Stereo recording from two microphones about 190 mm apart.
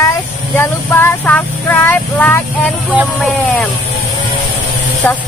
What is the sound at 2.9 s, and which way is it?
Speech, centre (ahead or behind).